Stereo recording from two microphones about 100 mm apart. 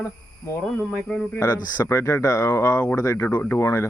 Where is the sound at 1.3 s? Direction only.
30° left (ahead or behind).